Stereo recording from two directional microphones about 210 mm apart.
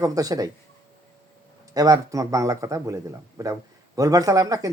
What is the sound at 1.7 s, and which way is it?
Speech, 15° right (ahead or behind).